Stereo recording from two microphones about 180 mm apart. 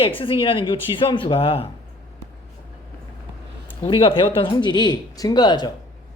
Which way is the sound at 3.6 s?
30° left (ahead or behind).